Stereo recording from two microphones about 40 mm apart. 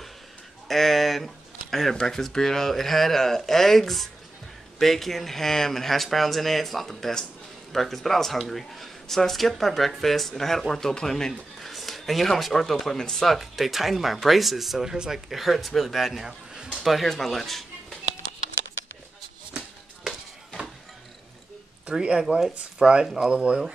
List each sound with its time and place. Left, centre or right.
0.7 s speech: centre
11.6 s speech: centre
21.9 s speech: right